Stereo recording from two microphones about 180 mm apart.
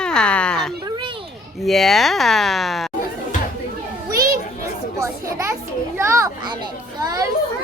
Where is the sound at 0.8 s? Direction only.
25° right (ahead or behind).